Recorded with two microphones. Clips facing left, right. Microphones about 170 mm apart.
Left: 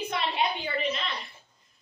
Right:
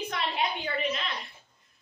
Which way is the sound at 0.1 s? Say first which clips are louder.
Left 3 dB; centre (ahead or behind).